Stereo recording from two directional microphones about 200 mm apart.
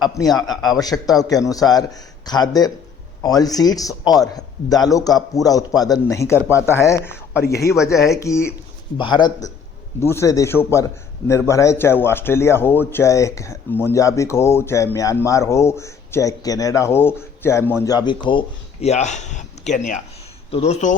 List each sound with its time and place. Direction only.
0.0 s a man's voice: 20° left (ahead or behind)
7.4 s speech: 50° left (ahead or behind)
7.7 s a man's voice: 15° left (ahead or behind); by 20.9 s 30° left (ahead or behind)